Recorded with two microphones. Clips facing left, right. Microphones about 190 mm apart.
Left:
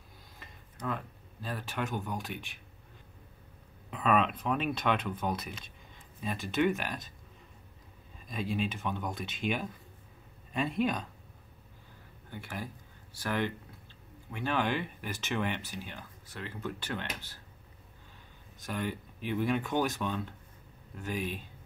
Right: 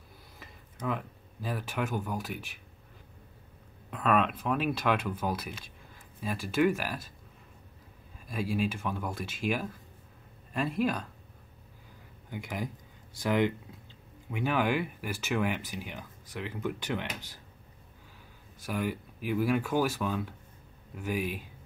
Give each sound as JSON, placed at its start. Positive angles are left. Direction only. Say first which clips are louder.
{"t": 0.4, "sound": "speech", "louder": "right 2 dB", "side_deg": -10}
{"t": 3.9, "sound": "speech", "louder": "right 1 dB", "side_deg": 0}
{"t": 8.3, "sound": "speech", "louder": "right 3 dB", "side_deg": -5}
{"t": 12.3, "sound": "speech", "louder": "right 4 dB", "side_deg": -15}
{"t": 18.7, "sound": "speech", "louder": "right 3 dB", "side_deg": -10}